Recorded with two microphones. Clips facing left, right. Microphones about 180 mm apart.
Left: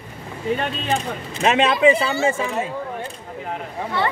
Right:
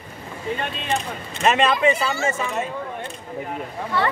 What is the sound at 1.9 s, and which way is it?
Speech, 30° left (ahead or behind).